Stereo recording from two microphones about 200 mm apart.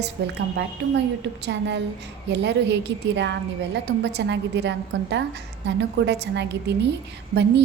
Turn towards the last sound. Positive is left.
turn(degrees=-60)  # may be behind; listen again after turning